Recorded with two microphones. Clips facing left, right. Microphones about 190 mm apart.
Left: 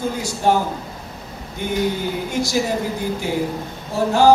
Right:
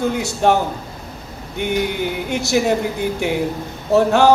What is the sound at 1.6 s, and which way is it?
Speech, 70° right (ahead or behind).